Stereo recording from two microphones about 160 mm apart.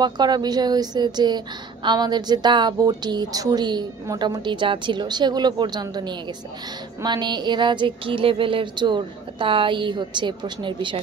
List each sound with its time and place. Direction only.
0.0 s a woman's voice: 25° right (ahead or behind)